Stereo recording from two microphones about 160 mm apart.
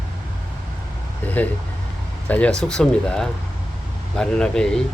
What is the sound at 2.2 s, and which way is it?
Speech, 10° left (ahead or behind).